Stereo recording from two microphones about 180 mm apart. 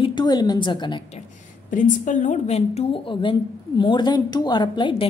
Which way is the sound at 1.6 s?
45° left (ahead or behind).